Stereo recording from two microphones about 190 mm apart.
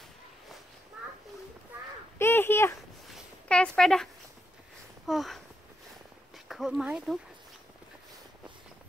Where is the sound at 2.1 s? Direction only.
10° left (ahead or behind).